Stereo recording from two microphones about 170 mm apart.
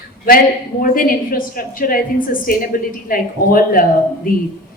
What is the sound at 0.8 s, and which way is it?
A woman's voice, 60° left (ahead or behind).